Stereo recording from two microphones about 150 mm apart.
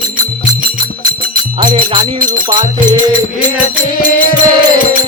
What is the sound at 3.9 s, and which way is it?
Music, 75° left (ahead or behind).